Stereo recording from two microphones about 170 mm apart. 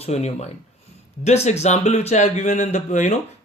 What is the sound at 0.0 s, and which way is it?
A man's voice, 40° left (ahead or behind).